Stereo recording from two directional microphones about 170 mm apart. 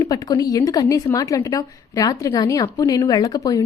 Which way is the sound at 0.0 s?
25° left (ahead or behind).